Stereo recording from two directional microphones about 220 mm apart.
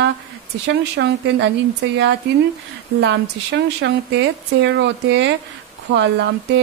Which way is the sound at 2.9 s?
55° right (ahead or behind).